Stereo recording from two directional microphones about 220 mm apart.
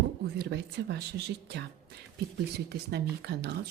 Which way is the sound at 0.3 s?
50° right (ahead or behind).